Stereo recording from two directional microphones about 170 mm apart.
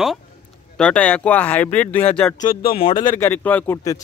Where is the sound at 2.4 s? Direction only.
60° left (ahead or behind).